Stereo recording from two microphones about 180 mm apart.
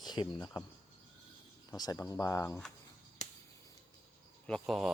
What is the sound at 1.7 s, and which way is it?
Speech, 20° left (ahead or behind).